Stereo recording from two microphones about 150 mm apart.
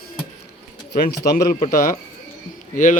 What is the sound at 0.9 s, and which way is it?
Speech, 90° left.